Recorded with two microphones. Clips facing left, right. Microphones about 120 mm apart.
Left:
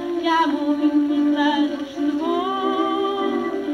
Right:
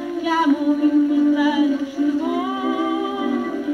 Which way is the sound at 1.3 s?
15° left (ahead or behind).